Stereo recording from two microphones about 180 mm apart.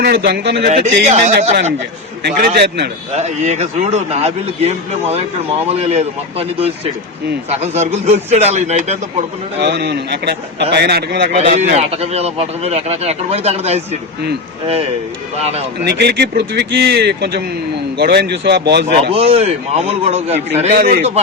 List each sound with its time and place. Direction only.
0.0 s speech: 60° right (ahead or behind)
0.6 s speech: 40° right (ahead or behind)
2.2 s speech: 65° right (ahead or behind)
3.1 s speech: 40° right (ahead or behind)
9.6 s a man's voice: 70° right (ahead or behind)
11.3 s speech: 40° right (ahead or behind)
15.4 s speech: 35° right (ahead or behind)
15.8 s a man's voice: 65° right (ahead or behind)
19.1 s speech: 35° right (ahead or behind)
20.7 s a man's voice: 50° right (ahead or behind)